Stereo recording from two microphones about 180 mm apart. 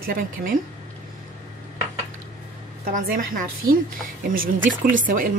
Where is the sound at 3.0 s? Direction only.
50° right (ahead or behind).